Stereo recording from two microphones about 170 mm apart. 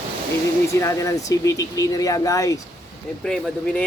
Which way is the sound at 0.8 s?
20° left (ahead or behind).